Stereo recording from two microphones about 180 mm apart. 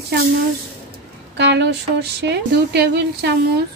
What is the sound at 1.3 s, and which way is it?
Speech, 70° right (ahead or behind).